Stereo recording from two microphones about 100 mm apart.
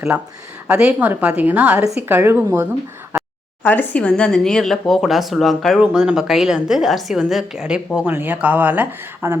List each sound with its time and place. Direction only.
0.7 s a woman's voice: 10° right (ahead or behind)
3.6 s speech: 15° left (ahead or behind)
5.8 s speech: 10° right (ahead or behind)
7.9 s speech: 20° right (ahead or behind)